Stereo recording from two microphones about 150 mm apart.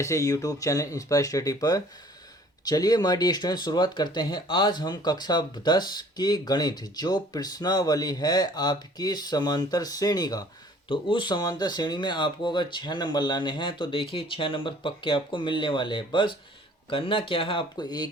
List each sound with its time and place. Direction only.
0.0 s speech: 20° left (ahead or behind)